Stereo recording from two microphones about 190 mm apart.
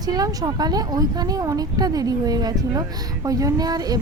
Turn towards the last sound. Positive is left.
turn(degrees=-20)  # may be behind; listen again after turning